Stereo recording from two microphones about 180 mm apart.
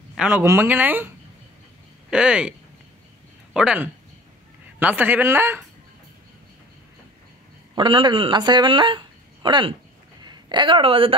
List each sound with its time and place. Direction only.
0.1 s speech: 5° right (ahead or behind)
3.5 s speech: 5° right (ahead or behind)
7.7 s a woman's voice: 25° right (ahead or behind)